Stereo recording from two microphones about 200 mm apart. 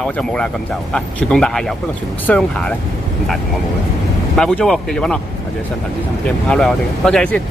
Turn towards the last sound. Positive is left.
turn(degrees=5)  # may be behind; listen again after turning